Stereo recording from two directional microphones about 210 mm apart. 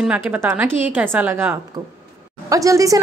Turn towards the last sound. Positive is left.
turn(degrees=-15)  # may be behind; listen again after turning